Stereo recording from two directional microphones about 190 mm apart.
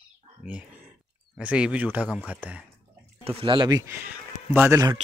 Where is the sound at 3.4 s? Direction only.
25° right (ahead or behind).